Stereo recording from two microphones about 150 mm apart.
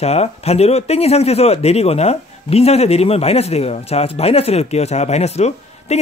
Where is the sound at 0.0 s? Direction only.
45° left (ahead or behind).